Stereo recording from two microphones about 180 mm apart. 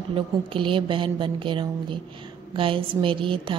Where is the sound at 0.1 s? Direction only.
30° right (ahead or behind).